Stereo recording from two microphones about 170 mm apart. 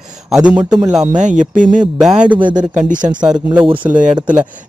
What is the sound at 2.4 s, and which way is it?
Speech, 25° right (ahead or behind).